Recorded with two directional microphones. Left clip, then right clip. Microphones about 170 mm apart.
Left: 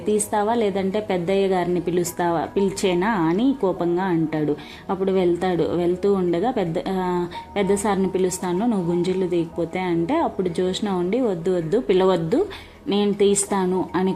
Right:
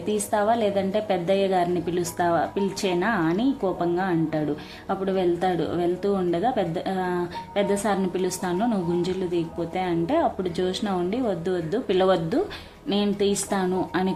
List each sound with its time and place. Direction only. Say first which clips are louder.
0.1 s speech: left 2 dB; 5° left (ahead or behind)